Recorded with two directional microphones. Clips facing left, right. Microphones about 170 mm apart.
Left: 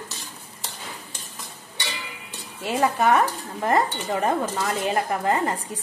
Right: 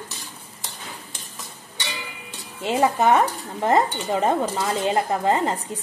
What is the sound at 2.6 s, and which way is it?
Speech, 20° right (ahead or behind).